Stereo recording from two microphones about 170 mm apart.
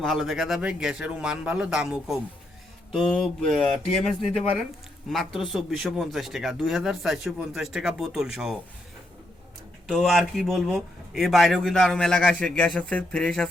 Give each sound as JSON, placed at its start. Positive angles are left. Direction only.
{"t": 0.0, "sound": "speech", "side_deg": 0}
{"t": 9.8, "sound": "speech", "side_deg": 0}